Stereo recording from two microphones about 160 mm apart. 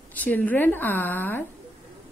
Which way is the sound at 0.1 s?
10° left (ahead or behind).